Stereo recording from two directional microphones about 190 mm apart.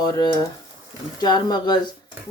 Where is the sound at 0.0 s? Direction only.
20° left (ahead or behind).